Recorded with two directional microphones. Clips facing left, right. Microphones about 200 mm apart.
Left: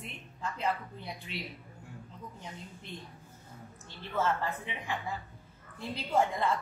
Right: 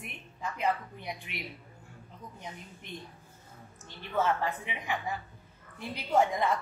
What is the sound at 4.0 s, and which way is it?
A woman's voice, 15° right (ahead or behind).